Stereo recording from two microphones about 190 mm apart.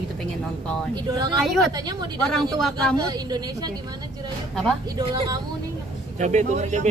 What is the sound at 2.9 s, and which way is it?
Speech, 20° right (ahead or behind).